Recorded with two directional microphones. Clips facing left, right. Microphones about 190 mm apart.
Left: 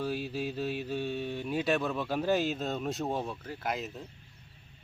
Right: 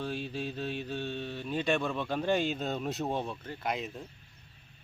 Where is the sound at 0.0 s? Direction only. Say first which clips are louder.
Left 2 dB; 5° left (ahead or behind).